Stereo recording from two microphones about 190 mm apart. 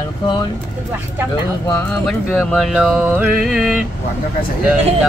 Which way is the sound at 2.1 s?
Centre (ahead or behind).